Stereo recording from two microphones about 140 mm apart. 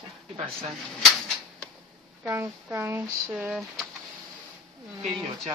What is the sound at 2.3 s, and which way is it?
Speech, 20° right (ahead or behind).